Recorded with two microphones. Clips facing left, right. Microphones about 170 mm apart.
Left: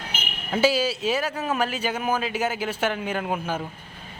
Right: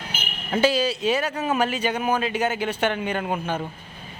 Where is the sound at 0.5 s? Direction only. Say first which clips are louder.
Right 1 dB; 5° left (ahead or behind).